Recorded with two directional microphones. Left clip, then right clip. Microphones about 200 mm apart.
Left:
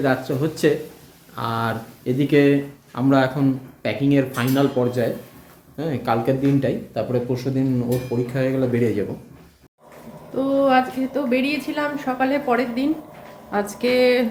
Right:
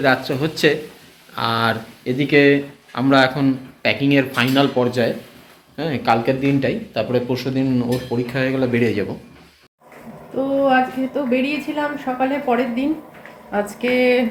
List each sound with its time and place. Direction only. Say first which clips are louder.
0.0 s speech: right 4 dB; 10° left (ahead or behind)
2.0 s speech: right 3 dB; 20° left (ahead or behind)
2.9 s speech: right 4 dB; 10° left (ahead or behind)
10.3 s a woman's voice: right 1 dB; 5° right (ahead or behind)